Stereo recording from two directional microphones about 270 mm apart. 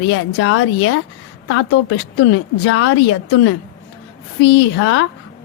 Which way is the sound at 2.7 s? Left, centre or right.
Left.